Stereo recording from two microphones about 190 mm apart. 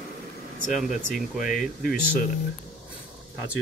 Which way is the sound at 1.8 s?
50° left (ahead or behind).